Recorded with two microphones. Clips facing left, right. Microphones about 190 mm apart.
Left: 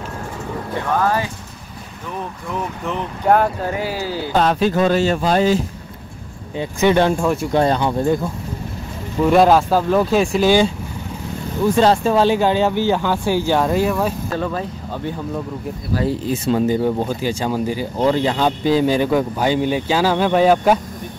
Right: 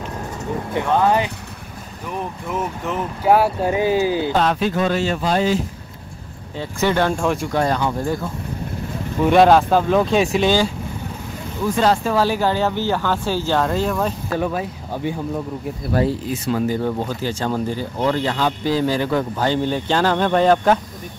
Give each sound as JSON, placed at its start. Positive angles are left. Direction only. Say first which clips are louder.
{"t": 0.7, "sound": "speech", "louder": "right 2 dB", "side_deg": -20}
{"t": 2.5, "sound": "speech", "louder": "even", "side_deg": -5}
{"t": 3.7, "sound": "speech", "louder": "right 6 dB", "side_deg": -20}
{"t": 4.4, "sound": "speech", "louder": "left 7 dB", "side_deg": 35}
{"t": 6.5, "sound": "speech", "louder": "left 4 dB", "side_deg": 15}
{"t": 7.5, "sound": "speech", "louder": "left 3 dB", "side_deg": 25}
{"t": 9.3, "sound": "speech", "louder": "even", "side_deg": 0}
{"t": 11.6, "sound": "speech", "louder": "left 3 dB", "side_deg": 25}
{"t": 14.3, "sound": "speech", "louder": "right 1 dB", "side_deg": -10}
{"t": 16.3, "sound": "speech", "louder": "left 3 dB", "side_deg": 25}